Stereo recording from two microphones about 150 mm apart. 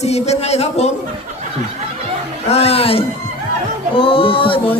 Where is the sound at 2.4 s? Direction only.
45° left (ahead or behind).